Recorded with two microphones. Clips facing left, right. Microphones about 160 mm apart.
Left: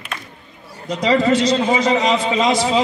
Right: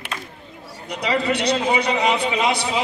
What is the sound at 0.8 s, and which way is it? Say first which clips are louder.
A man's voice: left 6 dB; 65° right (ahead or behind).